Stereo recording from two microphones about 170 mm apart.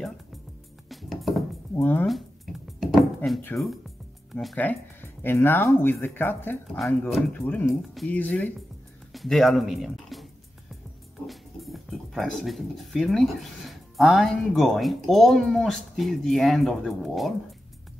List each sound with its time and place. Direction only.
0.8 s music: centre (ahead or behind)
1.8 s speech: 10° left (ahead or behind)
2.0 s a sound: centre (ahead or behind)
3.5 s speech: 10° left (ahead or behind)
4.4 s speech: centre (ahead or behind)
4.6 s speech: 10° left (ahead or behind)
6.8 s speech: centre (ahead or behind)
7.4 s speech: 10° left (ahead or behind)
11.2 s speech: centre (ahead or behind)